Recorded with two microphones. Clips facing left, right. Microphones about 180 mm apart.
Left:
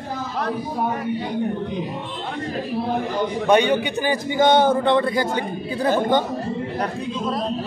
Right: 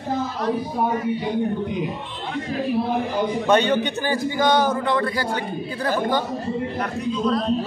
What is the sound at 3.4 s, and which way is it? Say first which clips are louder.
A man's voice: left 2 dB; 10° left (ahead or behind).